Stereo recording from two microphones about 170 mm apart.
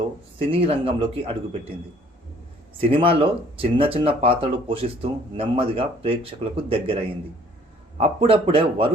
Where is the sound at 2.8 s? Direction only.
30° right (ahead or behind).